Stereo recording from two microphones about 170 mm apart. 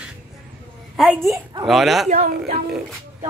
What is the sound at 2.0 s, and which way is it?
Speech, 45° right (ahead or behind).